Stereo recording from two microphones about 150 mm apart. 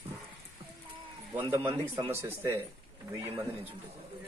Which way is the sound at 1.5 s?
15° right (ahead or behind).